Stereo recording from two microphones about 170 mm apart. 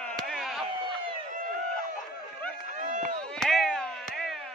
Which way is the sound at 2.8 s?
50° right (ahead or behind).